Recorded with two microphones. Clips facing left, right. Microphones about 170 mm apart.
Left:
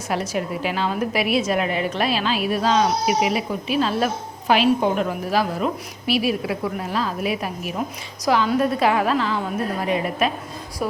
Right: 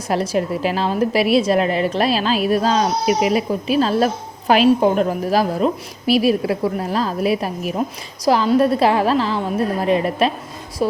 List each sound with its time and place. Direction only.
0.1 s a woman's voice: 35° right (ahead or behind)